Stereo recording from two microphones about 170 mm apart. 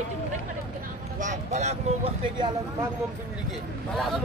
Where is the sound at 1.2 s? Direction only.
45° right (ahead or behind).